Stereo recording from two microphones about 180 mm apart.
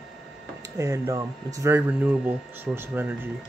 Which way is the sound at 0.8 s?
15° right (ahead or behind).